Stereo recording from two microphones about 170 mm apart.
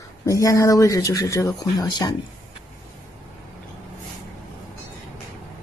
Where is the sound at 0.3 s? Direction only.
20° left (ahead or behind).